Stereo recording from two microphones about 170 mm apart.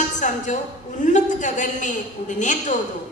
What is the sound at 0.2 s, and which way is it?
A woman's voice, 45° left (ahead or behind).